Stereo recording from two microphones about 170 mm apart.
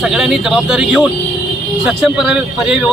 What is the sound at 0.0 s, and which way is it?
Speech, centre (ahead or behind).